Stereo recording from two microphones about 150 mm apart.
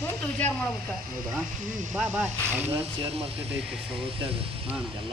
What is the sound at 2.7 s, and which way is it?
Speech, 40° right (ahead or behind).